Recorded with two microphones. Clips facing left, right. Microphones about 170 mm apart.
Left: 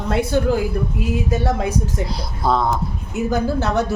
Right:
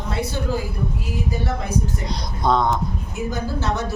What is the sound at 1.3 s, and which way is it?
Speech, 85° left.